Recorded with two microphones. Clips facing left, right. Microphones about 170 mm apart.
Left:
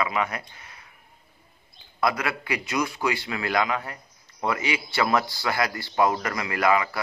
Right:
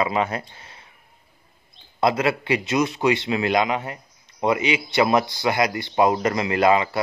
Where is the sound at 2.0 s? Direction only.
25° right (ahead or behind).